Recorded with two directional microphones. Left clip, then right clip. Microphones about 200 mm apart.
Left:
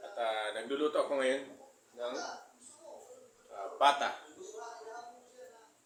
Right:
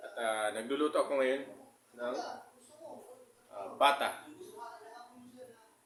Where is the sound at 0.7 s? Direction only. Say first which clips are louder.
Left 1 dB; 25° right (ahead or behind).